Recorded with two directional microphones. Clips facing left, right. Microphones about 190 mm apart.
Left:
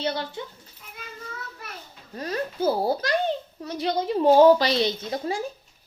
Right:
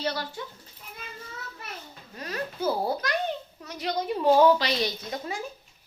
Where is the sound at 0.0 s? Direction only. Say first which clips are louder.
Left 3 dB; 25° left (ahead or behind).